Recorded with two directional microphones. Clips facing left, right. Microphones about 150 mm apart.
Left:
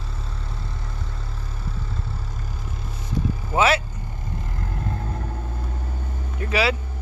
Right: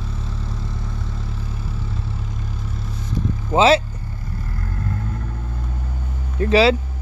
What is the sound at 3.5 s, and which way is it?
Speech, 25° right (ahead or behind).